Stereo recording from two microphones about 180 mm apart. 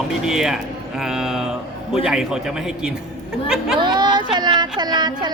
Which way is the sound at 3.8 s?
25° right (ahead or behind).